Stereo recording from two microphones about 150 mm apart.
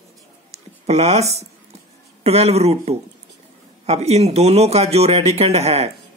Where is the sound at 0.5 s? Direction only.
45° right (ahead or behind).